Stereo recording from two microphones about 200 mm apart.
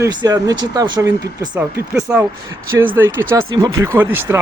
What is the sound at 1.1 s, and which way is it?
Speech, 10° right (ahead or behind).